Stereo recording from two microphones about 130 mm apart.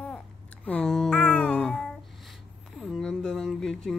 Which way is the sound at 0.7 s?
5° left (ahead or behind).